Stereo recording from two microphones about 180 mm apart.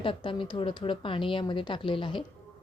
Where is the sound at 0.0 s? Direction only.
30° left (ahead or behind).